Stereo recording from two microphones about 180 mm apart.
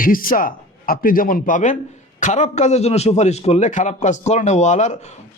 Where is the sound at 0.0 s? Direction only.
50° left (ahead or behind).